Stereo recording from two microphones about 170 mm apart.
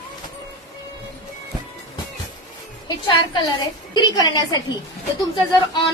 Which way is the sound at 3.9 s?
25° left (ahead or behind).